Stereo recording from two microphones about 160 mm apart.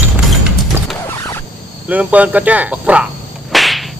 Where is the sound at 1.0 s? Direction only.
15° left (ahead or behind).